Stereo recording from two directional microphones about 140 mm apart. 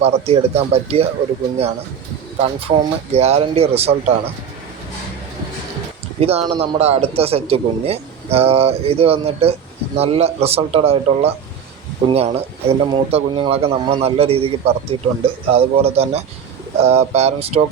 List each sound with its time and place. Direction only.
0.0 s a man's voice: 45° right (ahead or behind)
2.4 s a man's voice: 50° right (ahead or behind)
6.1 s a man's voice: 45° right (ahead or behind)